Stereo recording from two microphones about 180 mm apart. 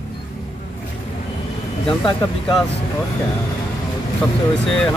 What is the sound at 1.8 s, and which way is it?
Speech, 25° left (ahead or behind).